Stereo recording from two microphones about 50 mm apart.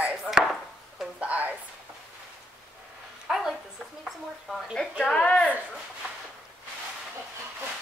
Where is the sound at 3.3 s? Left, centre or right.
Centre.